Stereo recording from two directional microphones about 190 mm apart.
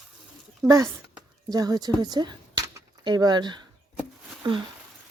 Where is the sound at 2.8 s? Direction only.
20° right (ahead or behind).